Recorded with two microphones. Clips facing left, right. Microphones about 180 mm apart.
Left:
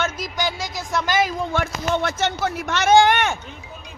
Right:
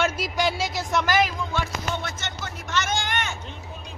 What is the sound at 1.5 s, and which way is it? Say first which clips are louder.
Speech: left 6 dB; 60° left (ahead or behind).